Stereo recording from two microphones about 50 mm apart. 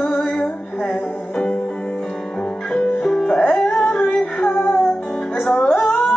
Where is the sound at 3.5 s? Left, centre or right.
Centre.